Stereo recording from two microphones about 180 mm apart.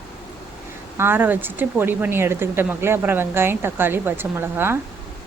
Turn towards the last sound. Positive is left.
turn(degrees=-10)  # may be behind; listen again after turning